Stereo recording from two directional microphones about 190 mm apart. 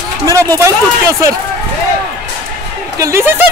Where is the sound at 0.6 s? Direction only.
15° right (ahead or behind).